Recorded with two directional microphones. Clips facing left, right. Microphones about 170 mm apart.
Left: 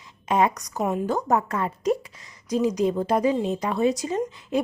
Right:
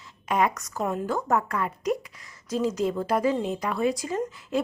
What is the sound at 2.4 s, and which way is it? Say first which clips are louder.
A woman's voice: left 3 dB; 15° left (ahead or behind).